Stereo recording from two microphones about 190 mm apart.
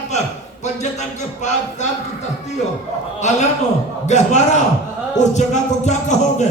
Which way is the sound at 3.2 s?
40° left (ahead or behind).